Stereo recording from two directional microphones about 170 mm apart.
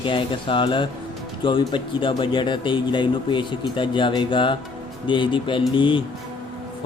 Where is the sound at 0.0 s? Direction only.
30° left (ahead or behind).